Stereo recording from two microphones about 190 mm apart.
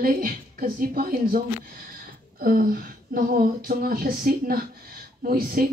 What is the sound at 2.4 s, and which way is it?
Speech, 50° right (ahead or behind).